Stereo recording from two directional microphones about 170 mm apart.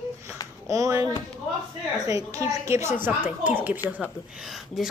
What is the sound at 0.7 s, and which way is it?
A child's voice, 20° right (ahead or behind).